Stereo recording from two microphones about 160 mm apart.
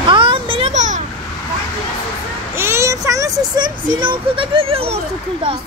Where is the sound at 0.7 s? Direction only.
50° right (ahead or behind).